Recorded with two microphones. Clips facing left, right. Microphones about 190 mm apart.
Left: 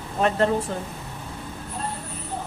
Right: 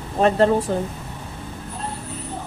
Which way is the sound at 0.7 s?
35° right (ahead or behind).